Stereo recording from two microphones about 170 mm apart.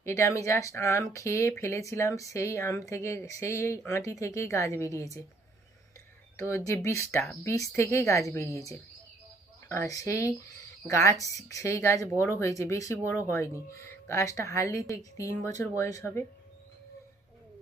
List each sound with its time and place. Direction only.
0.0 s speech: 15° left (ahead or behind)
6.8 s speech: 15° left (ahead or behind)